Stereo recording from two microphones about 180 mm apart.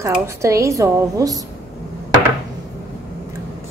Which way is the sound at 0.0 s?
15° right (ahead or behind).